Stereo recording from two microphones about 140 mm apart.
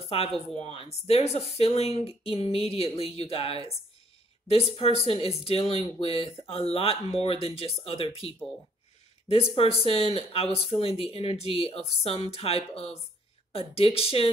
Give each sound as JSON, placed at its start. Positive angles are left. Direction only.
{"t": 0.1, "sound": "speech", "side_deg": 40}